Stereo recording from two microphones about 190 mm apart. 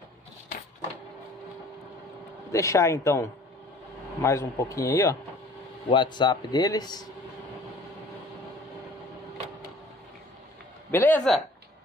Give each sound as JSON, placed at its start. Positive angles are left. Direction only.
{"t": 2.5, "sound": "a man's voice", "side_deg": 15}
{"t": 10.9, "sound": "a man's voice", "side_deg": 10}